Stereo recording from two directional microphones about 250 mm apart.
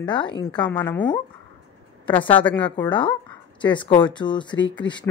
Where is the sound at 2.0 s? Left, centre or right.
Centre.